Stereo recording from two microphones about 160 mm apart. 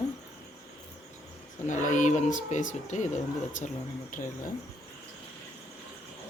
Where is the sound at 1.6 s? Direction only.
50° left (ahead or behind).